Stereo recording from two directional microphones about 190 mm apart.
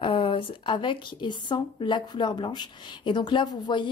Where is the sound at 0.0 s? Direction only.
25° left (ahead or behind).